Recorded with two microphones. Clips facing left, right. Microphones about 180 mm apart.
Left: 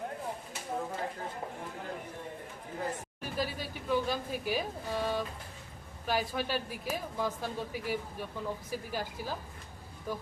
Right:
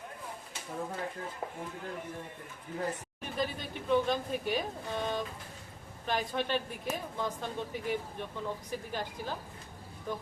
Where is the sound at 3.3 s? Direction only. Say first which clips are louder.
Right 1 dB; 5° left (ahead or behind).